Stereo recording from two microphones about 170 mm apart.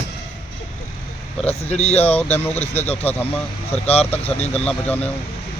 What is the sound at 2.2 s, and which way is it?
Speech, 10° left (ahead or behind).